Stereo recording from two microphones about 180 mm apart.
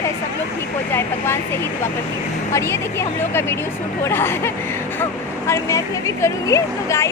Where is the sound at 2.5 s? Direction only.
15° left (ahead or behind).